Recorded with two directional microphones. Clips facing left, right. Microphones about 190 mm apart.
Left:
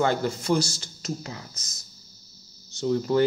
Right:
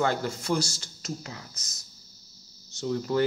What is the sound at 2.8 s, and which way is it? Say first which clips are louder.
Speech: left 4 dB; 25° left (ahead or behind).